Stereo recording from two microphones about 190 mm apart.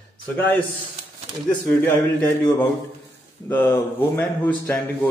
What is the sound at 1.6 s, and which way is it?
A man's voice, 10° left (ahead or behind).